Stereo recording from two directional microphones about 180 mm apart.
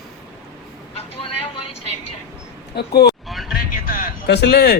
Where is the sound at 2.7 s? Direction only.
65° left (ahead or behind).